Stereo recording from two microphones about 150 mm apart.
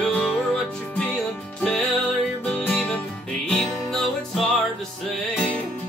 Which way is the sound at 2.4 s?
5° left (ahead or behind).